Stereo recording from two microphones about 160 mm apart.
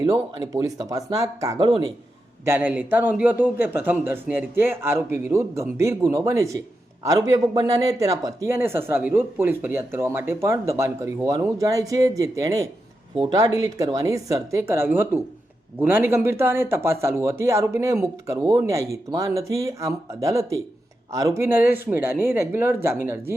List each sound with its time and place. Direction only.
0.0 s speech: 20° right (ahead or behind)
2.4 s speech: 15° right (ahead or behind)